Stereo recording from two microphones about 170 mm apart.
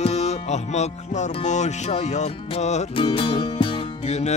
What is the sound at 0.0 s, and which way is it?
Music, 40° left (ahead or behind).